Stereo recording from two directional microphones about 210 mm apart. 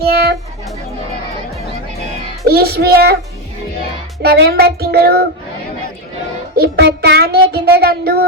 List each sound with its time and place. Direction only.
0.0 s music: 50° right (ahead or behind)
2.5 s child singing: 50° right (ahead or behind)
4.2 s child singing: 50° right (ahead or behind)
6.6 s child singing: 50° right (ahead or behind)